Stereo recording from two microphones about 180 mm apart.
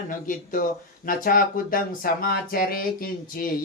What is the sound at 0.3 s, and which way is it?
Speech, 50° left (ahead or behind).